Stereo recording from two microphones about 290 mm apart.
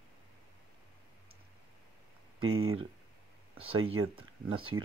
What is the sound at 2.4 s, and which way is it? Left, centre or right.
Speech, right.